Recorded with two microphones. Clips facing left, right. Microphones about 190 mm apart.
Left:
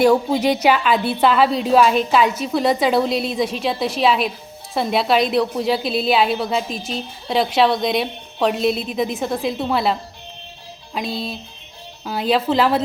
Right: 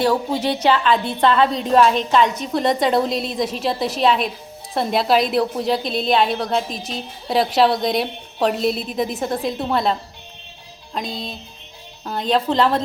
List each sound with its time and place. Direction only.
0.0 s a woman's voice: 10° left (ahead or behind)